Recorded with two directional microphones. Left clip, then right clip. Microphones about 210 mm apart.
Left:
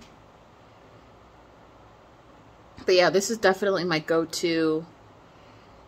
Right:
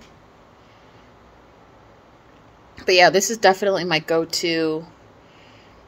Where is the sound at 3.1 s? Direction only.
55° left (ahead or behind).